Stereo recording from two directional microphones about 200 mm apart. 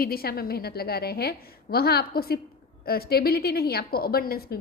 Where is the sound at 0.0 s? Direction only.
50° left (ahead or behind).